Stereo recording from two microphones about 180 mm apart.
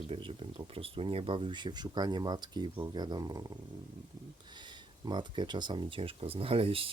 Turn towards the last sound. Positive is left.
turn(degrees=-30)  # may be behind; listen again after turning